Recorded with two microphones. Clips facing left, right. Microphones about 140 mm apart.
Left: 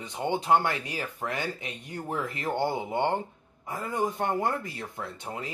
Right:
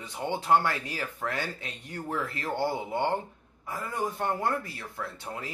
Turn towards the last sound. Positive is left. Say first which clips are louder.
# left 1 dB
turn(degrees=20)  # may be behind; listen again after turning